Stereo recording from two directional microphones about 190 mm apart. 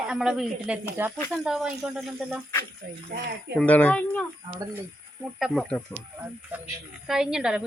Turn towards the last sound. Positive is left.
turn(degrees=-5)  # may be behind; listen again after turning